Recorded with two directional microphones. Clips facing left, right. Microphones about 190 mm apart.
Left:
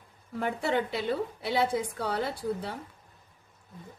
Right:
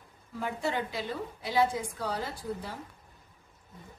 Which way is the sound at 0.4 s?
65° left (ahead or behind).